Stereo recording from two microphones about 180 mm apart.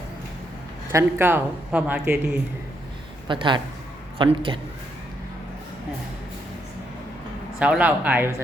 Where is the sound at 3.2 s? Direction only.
25° right (ahead or behind).